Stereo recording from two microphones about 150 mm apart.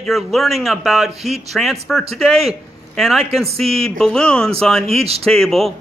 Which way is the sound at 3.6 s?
40° right (ahead or behind).